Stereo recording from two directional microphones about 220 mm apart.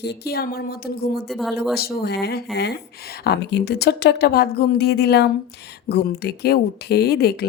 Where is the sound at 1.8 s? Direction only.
45° left (ahead or behind).